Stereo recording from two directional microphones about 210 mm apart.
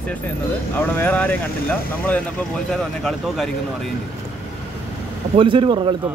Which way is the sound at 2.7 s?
Centre (ahead or behind).